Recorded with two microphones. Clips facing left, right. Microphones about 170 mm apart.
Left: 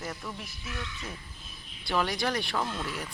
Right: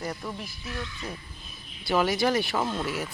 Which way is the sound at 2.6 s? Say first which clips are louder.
Right 5 dB; 25° right (ahead or behind).